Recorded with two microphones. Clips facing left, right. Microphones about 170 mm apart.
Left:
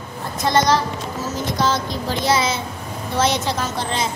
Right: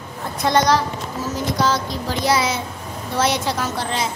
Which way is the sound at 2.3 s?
10° right (ahead or behind).